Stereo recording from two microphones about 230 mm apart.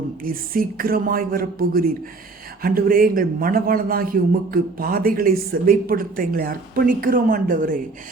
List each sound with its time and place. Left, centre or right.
0.2 s a man's voice: right